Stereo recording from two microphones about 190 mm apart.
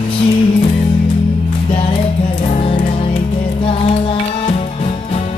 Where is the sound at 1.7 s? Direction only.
30° left (ahead or behind).